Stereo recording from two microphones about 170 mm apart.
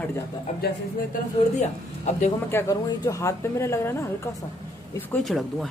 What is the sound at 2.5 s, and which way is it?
Speech, 15° left (ahead or behind).